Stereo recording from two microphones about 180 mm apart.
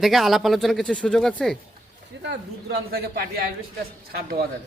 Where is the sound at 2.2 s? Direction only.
60° right (ahead or behind).